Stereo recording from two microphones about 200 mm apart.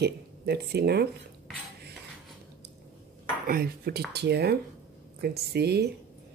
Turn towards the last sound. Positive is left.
turn(degrees=-55)  # may be behind; listen again after turning